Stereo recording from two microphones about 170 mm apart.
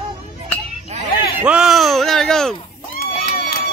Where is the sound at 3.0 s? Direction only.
60° left (ahead or behind).